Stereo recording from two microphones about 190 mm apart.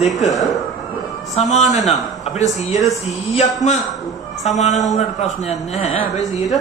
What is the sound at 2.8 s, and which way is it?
Speech, centre (ahead or behind).